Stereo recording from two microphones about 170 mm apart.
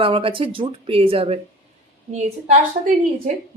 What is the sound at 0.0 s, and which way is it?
A woman's voice, 30° right (ahead or behind).